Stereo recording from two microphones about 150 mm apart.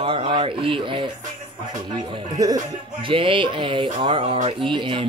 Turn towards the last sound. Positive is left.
turn(degrees=-35)  # may be behind; listen again after turning